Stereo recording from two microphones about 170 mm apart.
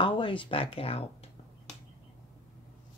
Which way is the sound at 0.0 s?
30° left (ahead or behind).